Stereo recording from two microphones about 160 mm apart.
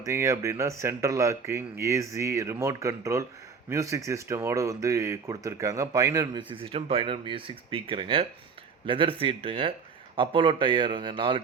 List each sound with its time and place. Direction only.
0.0 s speech: 20° right (ahead or behind)